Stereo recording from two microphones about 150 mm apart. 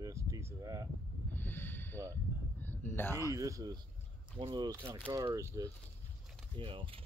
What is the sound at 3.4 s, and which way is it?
Speech, 25° right (ahead or behind).